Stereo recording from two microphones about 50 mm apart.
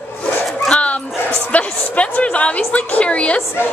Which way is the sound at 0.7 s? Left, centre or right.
Left.